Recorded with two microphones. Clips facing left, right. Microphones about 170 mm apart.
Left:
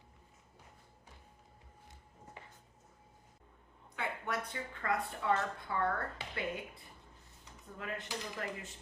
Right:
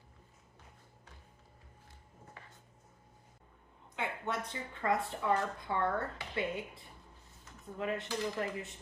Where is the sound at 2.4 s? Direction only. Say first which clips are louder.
Left 3 dB; 20° left (ahead or behind).